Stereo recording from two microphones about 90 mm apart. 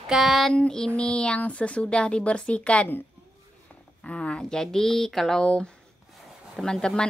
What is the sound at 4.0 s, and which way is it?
Speech, 10° left (ahead or behind).